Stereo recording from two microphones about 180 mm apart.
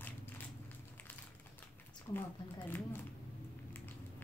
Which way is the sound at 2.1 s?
20° left (ahead or behind).